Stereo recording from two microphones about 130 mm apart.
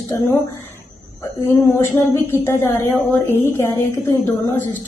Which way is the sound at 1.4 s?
20° left (ahead or behind).